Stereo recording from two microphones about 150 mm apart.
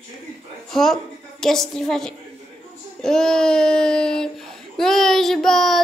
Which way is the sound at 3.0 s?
5° left (ahead or behind).